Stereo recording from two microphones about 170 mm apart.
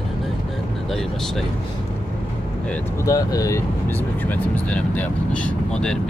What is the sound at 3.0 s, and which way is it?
Speech, 20° left (ahead or behind).